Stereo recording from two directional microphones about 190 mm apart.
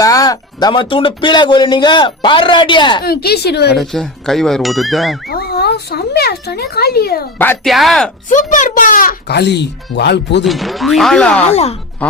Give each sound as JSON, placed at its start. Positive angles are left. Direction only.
{"t": 0.0, "sound": "speech", "side_deg": 20}
{"t": 3.0, "sound": "a woman's voice", "side_deg": 55}
{"t": 3.8, "sound": "speech", "side_deg": 0}
{"t": 5.3, "sound": "speech", "side_deg": 55}
{"t": 7.3, "sound": "speech", "side_deg": 10}
{"t": 8.3, "sound": "speech", "side_deg": 40}
{"t": 10.4, "sound": "speech", "side_deg": 0}
{"t": 11.4, "sound": "speech", "side_deg": 35}